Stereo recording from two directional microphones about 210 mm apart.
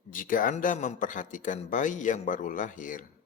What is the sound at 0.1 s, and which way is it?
A man's voice, 40° left (ahead or behind).